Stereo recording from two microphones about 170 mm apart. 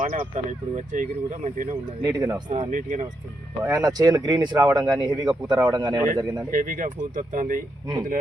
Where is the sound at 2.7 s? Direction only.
50° right (ahead or behind).